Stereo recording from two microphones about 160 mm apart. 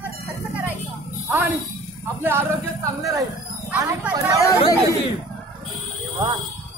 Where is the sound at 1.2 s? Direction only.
10° right (ahead or behind).